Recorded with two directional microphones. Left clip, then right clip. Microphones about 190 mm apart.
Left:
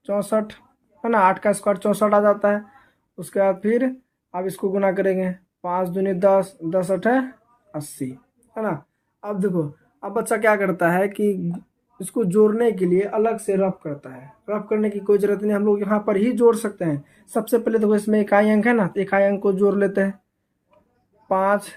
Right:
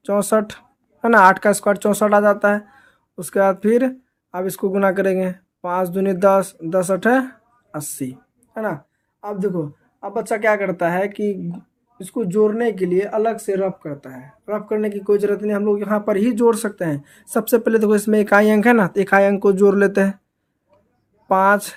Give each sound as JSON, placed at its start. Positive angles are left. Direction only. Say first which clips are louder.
{"t": 0.0, "sound": "speech", "louder": "right 4 dB", "side_deg": -50}
{"t": 8.5, "sound": "a woman's voice", "louder": "right 1 dB", "side_deg": -25}
{"t": 9.2, "sound": "speech", "louder": "right 1 dB", "side_deg": -10}
{"t": 21.2, "sound": "speech", "louder": "right 5 dB", "side_deg": -40}